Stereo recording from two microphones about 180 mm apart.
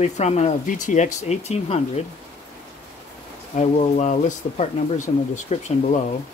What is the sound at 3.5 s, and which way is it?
Speech, 40° left (ahead or behind).